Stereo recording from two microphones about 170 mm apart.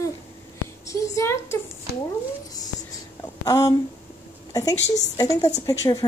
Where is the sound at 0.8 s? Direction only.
20° left (ahead or behind).